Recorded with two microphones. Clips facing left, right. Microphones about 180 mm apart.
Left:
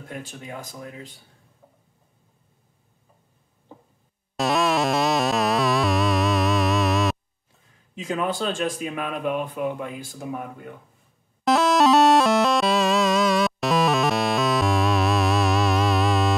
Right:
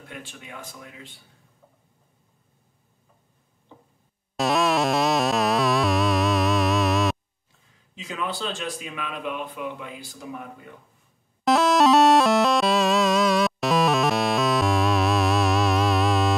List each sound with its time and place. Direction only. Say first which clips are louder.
0.1 s speech: left 5 dB; 40° left (ahead or behind)
4.4 s music: even; centre (ahead or behind)
7.9 s speech: left 5 dB; 50° left (ahead or behind)
11.4 s music: even; centre (ahead or behind)